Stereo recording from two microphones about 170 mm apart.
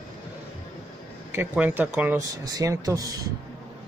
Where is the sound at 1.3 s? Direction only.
10° right (ahead or behind).